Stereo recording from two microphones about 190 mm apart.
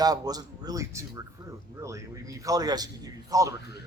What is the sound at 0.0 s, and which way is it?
A man's voice, 20° right (ahead or behind).